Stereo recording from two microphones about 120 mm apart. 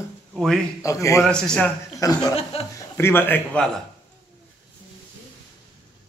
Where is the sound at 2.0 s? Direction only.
30° left (ahead or behind).